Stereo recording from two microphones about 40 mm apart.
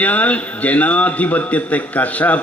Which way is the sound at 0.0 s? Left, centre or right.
Left.